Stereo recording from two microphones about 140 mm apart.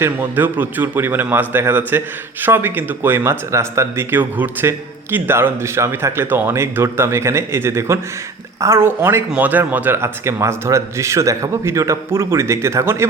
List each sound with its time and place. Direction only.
0.0 s speech: 15° right (ahead or behind)